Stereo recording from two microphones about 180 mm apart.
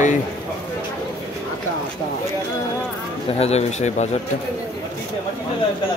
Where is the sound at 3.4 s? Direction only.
35° left (ahead or behind).